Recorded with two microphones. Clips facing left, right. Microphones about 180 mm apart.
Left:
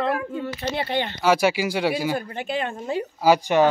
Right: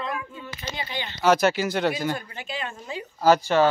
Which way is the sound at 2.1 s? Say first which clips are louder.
Left 7 dB; 55° left (ahead or behind).